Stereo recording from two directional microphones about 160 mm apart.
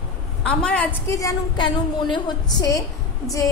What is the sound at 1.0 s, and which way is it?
A woman's voice, 20° left (ahead or behind).